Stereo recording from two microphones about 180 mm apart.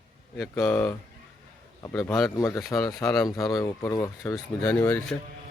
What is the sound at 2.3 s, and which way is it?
A man's voice, 15° left (ahead or behind).